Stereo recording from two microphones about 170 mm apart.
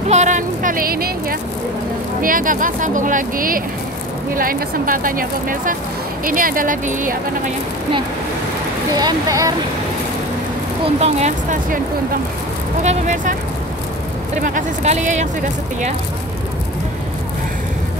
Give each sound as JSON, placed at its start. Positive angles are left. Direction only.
{"t": 0.1, "sound": "speech", "side_deg": -45}
{"t": 8.9, "sound": "speech", "side_deg": -20}
{"t": 11.0, "sound": "speech", "side_deg": -40}
{"t": 12.8, "sound": "speech", "side_deg": -45}
{"t": 14.4, "sound": "speech", "side_deg": -45}